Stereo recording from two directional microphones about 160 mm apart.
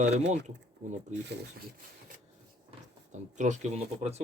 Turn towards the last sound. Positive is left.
turn(degrees=-45)  # may be behind; listen again after turning